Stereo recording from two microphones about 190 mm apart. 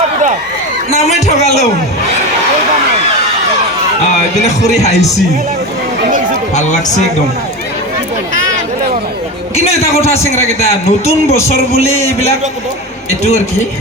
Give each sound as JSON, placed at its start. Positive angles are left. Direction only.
{"t": 0.9, "sound": "a man's voice", "side_deg": 35}
{"t": 4.4, "sound": "a man's voice", "side_deg": 35}
{"t": 6.5, "sound": "a man's voice", "side_deg": 40}
{"t": 9.6, "sound": "a man's voice", "side_deg": 35}